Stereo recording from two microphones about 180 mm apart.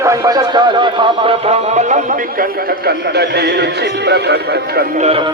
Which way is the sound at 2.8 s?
65° right (ahead or behind).